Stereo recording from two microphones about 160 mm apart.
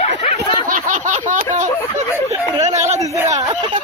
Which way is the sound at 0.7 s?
55° right (ahead or behind).